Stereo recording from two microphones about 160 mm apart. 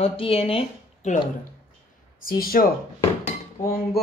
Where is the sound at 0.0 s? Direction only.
35° left (ahead or behind).